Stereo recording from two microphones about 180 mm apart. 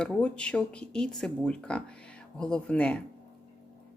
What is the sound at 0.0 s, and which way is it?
Speech, 5° left (ahead or behind).